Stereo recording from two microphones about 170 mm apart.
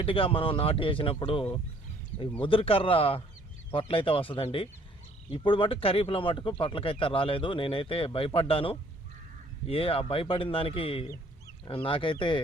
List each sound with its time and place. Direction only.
0.0 s speech: 30° left (ahead or behind)